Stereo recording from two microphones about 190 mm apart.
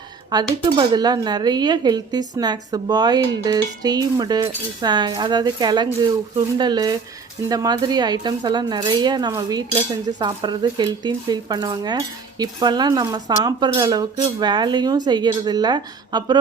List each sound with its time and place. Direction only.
0.6 s speech: 20° right (ahead or behind)